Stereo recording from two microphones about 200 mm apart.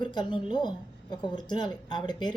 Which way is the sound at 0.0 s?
25° left (ahead or behind).